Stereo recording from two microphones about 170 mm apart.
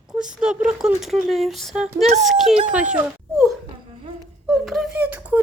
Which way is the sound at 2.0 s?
40° right (ahead or behind).